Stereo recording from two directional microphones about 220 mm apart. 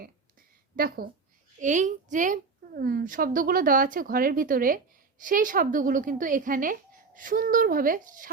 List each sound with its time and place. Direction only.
0.8 s a woman's voice: 40° right (ahead or behind)